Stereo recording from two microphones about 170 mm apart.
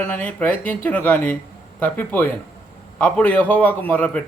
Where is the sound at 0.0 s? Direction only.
10° left (ahead or behind).